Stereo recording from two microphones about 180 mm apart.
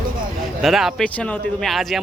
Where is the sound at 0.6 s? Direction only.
Centre (ahead or behind).